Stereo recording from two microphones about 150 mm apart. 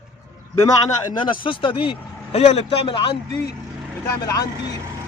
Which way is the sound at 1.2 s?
35° left (ahead or behind).